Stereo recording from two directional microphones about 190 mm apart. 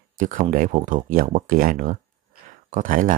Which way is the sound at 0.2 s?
45° right (ahead or behind).